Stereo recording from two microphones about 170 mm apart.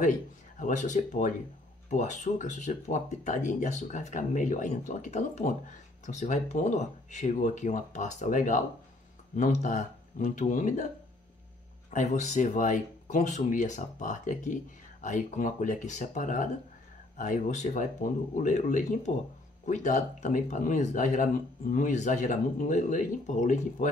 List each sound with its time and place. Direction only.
0.6 s speech: 45° left (ahead or behind)
11.9 s speech: 45° left (ahead or behind)